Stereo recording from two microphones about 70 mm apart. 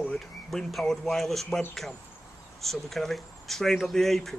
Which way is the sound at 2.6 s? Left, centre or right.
Centre.